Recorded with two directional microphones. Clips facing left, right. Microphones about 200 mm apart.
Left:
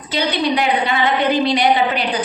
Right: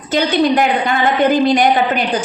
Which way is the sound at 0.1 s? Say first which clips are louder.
Right 5 dB; 45° right (ahead or behind).